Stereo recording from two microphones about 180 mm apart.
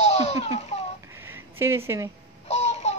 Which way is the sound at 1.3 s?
15° right (ahead or behind).